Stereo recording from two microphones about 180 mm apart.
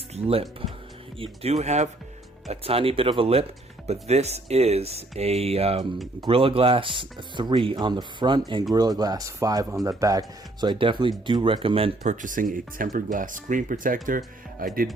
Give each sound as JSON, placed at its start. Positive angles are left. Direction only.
{"t": 0.1, "sound": "speech", "side_deg": -35}
{"t": 12.2, "sound": "speech", "side_deg": -50}